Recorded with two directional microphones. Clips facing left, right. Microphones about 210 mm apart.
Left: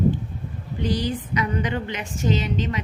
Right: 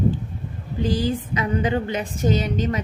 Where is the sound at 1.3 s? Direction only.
30° right (ahead or behind).